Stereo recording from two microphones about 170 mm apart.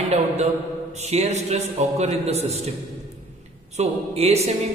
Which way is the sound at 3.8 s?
40° right (ahead or behind).